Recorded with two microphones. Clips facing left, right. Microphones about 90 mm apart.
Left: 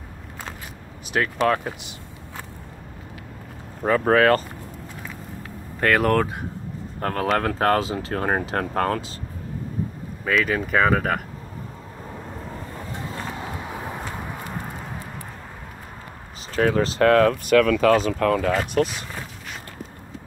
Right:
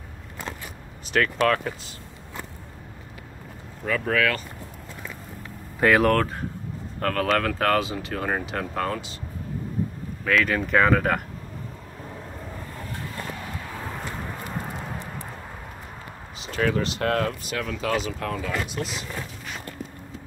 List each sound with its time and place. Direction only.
1.1 s speech: 20° left (ahead or behind)
3.8 s speech: 40° left (ahead or behind)
5.8 s speech: 5° right (ahead or behind)
6.1 s speech: 10° left (ahead or behind)
7.0 s speech: 25° left (ahead or behind); by 9.2 s 45° left (ahead or behind)
10.2 s speech: 5° left (ahead or behind)
12.9 s a sound: 20° left (ahead or behind); by 15.0 s centre (ahead or behind)
16.5 s speech: 40° left (ahead or behind)
17.1 s speech: 55° left (ahead or behind)